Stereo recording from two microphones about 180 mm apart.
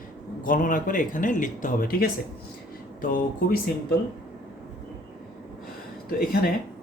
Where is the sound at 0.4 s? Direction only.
50° left (ahead or behind).